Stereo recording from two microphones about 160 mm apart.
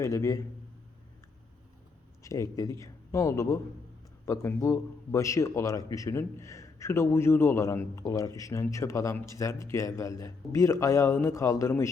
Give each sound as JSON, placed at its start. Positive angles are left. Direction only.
{"t": 0.0, "sound": "a man's voice", "side_deg": 20}
{"t": 2.2, "sound": "a man's voice", "side_deg": 20}